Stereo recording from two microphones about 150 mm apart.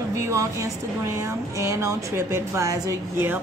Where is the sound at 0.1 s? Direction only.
20° right (ahead or behind).